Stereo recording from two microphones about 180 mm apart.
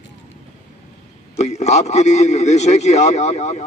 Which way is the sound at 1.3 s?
40° left (ahead or behind).